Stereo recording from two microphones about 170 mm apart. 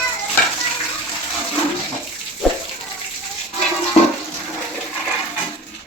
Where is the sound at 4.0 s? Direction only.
35° left (ahead or behind).